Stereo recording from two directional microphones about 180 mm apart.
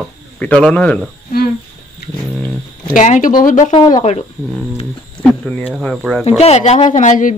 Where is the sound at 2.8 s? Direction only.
45° left (ahead or behind).